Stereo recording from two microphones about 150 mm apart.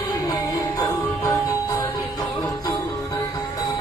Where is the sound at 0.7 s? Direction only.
15° left (ahead or behind).